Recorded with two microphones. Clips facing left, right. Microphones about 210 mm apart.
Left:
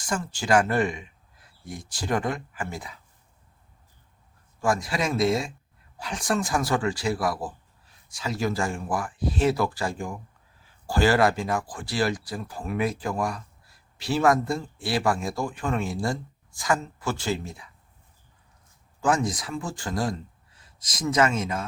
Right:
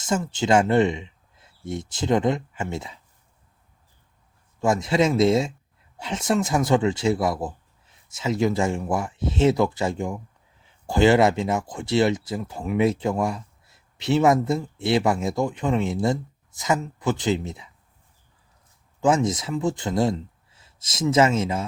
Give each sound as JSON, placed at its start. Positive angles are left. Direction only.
{"t": 0.0, "sound": "speech", "side_deg": -20}
{"t": 4.6, "sound": "speech", "side_deg": -25}
{"t": 18.9, "sound": "speech", "side_deg": -25}